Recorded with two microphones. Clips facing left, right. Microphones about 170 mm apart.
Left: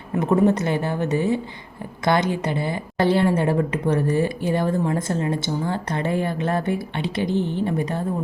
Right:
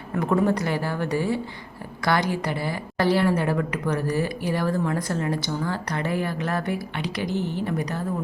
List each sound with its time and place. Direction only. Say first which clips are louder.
0.2 s a woman's voice: left 3 dB; 20° left (ahead or behind)
7.3 s a woman's voice: left 3 dB; 10° right (ahead or behind)
7.6 s a woman's voice: left 4 dB; 25° left (ahead or behind)